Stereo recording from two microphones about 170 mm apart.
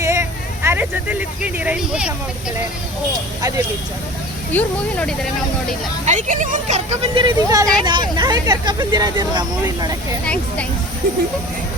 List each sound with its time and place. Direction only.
0.0 s a sound: 15° right (ahead or behind)
4.5 s speech: 5° left (ahead or behind)
6.1 s speech: 45° right (ahead or behind)
7.4 s speech: 20° right (ahead or behind)
10.2 s speech: 5° left (ahead or behind)